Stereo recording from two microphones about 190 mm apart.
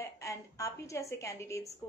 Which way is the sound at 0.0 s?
15° left (ahead or behind).